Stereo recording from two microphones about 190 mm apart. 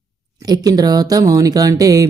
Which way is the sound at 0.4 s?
20° right (ahead or behind).